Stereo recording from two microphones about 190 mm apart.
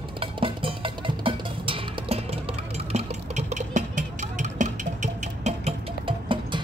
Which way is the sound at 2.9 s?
35° right (ahead or behind).